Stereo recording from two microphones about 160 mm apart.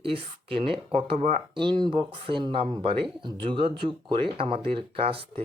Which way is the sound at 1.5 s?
30° right (ahead or behind).